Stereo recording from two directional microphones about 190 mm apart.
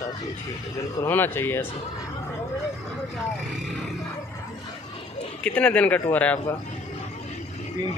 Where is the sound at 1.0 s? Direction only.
10° left (ahead or behind).